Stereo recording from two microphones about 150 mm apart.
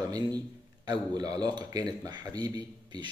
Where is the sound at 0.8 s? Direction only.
25° right (ahead or behind).